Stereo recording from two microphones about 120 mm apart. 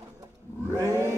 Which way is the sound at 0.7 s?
20° left (ahead or behind).